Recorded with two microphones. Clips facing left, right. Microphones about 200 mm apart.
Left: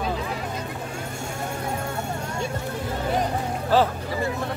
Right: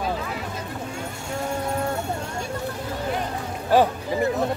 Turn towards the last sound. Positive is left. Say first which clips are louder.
# right 2 dB
turn(degrees=-15)  # may be behind; listen again after turning